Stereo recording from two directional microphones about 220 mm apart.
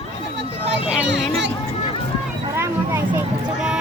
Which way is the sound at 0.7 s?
55° right (ahead or behind).